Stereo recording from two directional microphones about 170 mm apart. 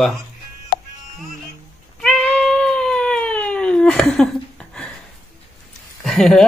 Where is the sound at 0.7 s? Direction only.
65° left (ahead or behind).